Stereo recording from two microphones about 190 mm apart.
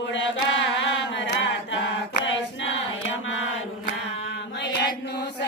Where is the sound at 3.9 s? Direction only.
70° left (ahead or behind).